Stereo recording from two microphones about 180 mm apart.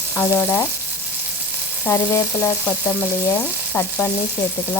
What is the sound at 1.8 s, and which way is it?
Speech, 15° left (ahead or behind).